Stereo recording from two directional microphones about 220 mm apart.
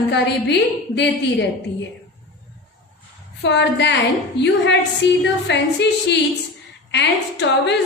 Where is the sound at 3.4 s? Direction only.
55° left (ahead or behind).